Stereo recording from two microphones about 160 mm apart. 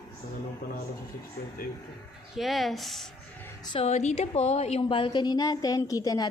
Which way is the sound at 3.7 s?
45° left (ahead or behind).